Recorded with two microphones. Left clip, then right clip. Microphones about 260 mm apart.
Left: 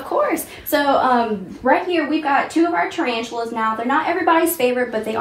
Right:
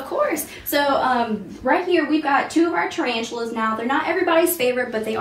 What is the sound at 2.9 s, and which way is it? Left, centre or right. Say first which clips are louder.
A woman's voice: left 1 dB; centre.